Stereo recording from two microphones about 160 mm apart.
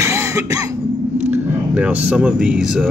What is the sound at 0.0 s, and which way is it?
Cough, 15° right (ahead or behind).